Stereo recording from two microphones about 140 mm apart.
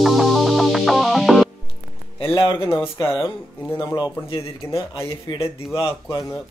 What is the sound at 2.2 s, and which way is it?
Music, 35° left (ahead or behind).